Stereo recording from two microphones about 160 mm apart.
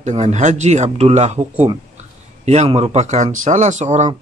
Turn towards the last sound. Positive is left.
turn(degrees=-45)  # may be behind; listen again after turning